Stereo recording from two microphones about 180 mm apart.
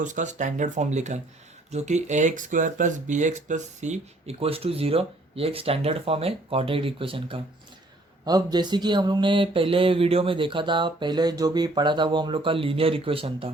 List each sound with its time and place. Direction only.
0.0 s speech: 45° right (ahead or behind)